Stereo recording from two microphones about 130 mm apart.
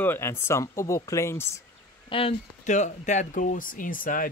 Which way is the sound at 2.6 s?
70° left (ahead or behind).